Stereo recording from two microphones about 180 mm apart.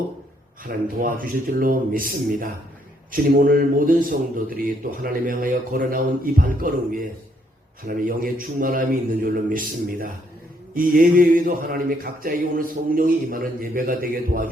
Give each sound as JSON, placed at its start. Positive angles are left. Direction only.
{"t": 0.9, "sound": "a man's voice", "side_deg": -50}